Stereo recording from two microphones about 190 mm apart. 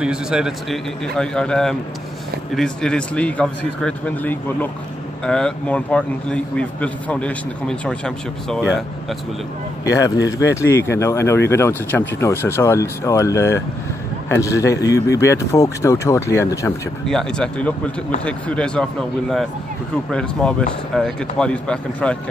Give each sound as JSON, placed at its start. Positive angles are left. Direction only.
{"t": 0.0, "sound": "a man's voice", "side_deg": -5}
{"t": 8.5, "sound": "speech", "side_deg": -5}
{"t": 9.8, "sound": "speech", "side_deg": 15}
{"t": 17.0, "sound": "a man's voice", "side_deg": 0}